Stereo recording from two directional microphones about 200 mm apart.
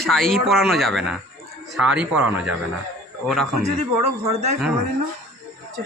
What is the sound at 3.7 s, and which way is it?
Speech, 35° right (ahead or behind).